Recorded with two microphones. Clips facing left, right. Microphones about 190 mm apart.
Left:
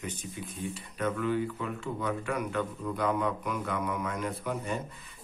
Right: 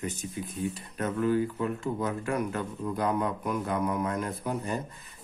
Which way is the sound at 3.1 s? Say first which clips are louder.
Right 2 dB; 40° right (ahead or behind).